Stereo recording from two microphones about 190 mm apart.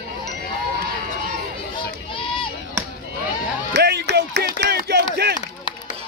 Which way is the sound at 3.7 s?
60° right (ahead or behind).